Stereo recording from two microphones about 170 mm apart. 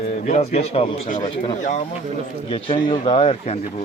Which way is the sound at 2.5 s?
30° left (ahead or behind).